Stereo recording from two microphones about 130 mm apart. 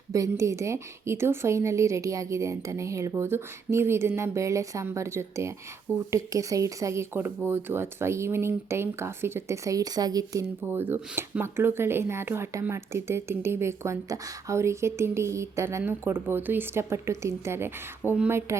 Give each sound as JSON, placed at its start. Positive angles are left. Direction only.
{"t": 0.1, "sound": "a woman's voice", "side_deg": -25}
{"t": 10.7, "sound": "a woman's voice", "side_deg": -15}